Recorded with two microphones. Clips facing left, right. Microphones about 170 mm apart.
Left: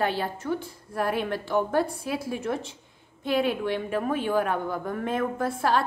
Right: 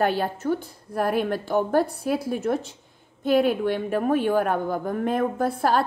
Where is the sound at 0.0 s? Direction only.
50° right (ahead or behind).